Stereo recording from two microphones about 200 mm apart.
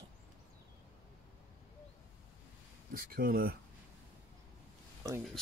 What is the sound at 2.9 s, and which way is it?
Speech, 45° right (ahead or behind).